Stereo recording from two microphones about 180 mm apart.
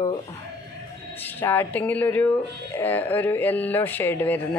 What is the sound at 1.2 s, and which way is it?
Speech, 10° left (ahead or behind).